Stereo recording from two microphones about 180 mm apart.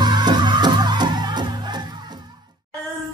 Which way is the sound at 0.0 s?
25° right (ahead or behind).